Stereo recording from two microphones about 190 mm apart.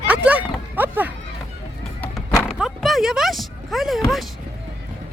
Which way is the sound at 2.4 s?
Centre (ahead or behind).